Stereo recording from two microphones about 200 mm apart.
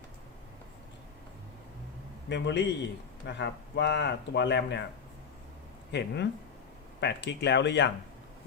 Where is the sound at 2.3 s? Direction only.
60° left (ahead or behind).